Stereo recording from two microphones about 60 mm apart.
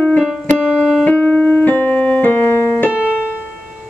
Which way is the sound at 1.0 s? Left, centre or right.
Left.